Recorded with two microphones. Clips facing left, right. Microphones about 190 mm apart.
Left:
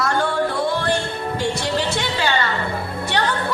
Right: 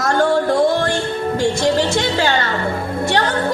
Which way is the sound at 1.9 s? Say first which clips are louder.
Right 4 dB; 45° right (ahead or behind).